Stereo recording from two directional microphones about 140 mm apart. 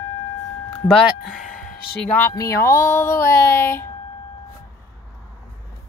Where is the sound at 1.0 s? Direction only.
Centre (ahead or behind).